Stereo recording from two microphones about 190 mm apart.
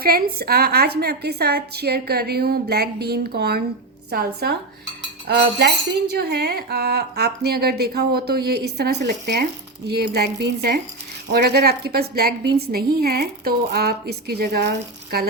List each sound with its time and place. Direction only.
0.0 s speech: 50° right (ahead or behind)